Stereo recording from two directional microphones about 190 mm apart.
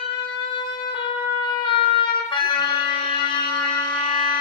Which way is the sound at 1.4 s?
25° left (ahead or behind).